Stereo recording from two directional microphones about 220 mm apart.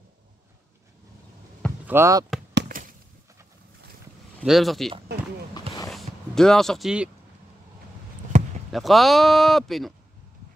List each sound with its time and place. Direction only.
1.9 s speech: 10° right (ahead or behind)
2.5 s a sound: 40° right (ahead or behind)
4.4 s speech: centre (ahead or behind)
5.9 s a sound: centre (ahead or behind)
8.3 s basketball bounce: 30° right (ahead or behind)
8.7 s speech: centre (ahead or behind)